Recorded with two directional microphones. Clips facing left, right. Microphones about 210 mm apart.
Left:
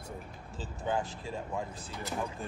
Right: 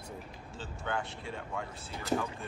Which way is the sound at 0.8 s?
35° left (ahead or behind).